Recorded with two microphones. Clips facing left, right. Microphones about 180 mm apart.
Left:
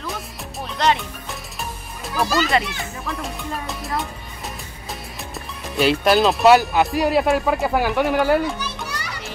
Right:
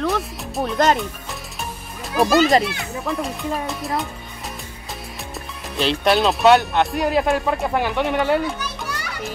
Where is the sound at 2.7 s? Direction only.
Centre (ahead or behind).